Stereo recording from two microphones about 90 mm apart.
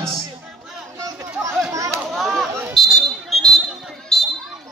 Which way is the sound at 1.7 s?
35° right (ahead or behind).